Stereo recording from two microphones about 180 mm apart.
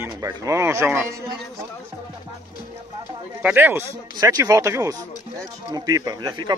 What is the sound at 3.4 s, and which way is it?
Speech, 10° right (ahead or behind).